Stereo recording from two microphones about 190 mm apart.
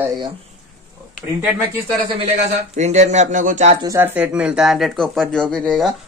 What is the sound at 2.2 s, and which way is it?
Speech, 35° right (ahead or behind).